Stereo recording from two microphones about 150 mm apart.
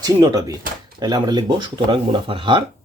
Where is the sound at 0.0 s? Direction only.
25° right (ahead or behind).